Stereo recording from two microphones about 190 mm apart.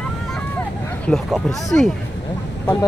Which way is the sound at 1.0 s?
Centre (ahead or behind).